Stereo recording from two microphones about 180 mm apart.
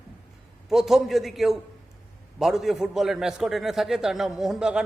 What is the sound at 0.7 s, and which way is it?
A man's voice, centre (ahead or behind).